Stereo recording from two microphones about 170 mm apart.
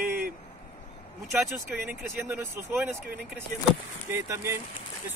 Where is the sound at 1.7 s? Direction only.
5° right (ahead or behind).